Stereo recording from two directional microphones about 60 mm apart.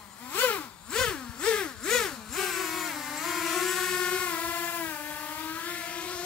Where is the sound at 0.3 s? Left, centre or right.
Left.